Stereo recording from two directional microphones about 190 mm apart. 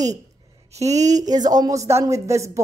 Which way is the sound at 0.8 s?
35° right (ahead or behind).